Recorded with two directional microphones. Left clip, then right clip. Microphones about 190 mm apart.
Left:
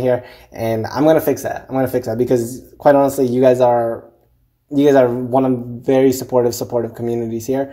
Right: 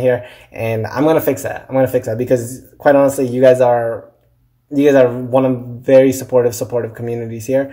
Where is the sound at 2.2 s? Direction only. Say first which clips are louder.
Right 1 dB; 20° left (ahead or behind).